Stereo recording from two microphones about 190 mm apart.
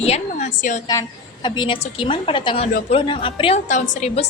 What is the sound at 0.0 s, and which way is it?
Speech, 35° left (ahead or behind).